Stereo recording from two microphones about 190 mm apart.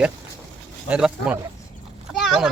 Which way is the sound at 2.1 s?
Centre (ahead or behind).